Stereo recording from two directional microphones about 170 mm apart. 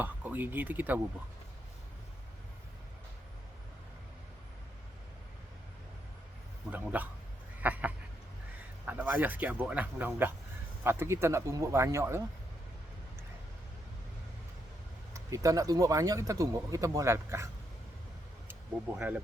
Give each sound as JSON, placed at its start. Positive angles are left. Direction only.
{"t": 0.0, "sound": "speech", "side_deg": -10}
{"t": 6.7, "sound": "speech", "side_deg": -10}
{"t": 7.6, "sound": "a sound", "side_deg": -10}
{"t": 8.9, "sound": "speech", "side_deg": -10}
{"t": 15.1, "sound": "speech", "side_deg": -20}
{"t": 18.9, "sound": "speech", "side_deg": -10}